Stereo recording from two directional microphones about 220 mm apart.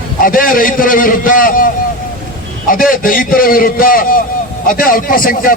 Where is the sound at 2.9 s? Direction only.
40° left (ahead or behind).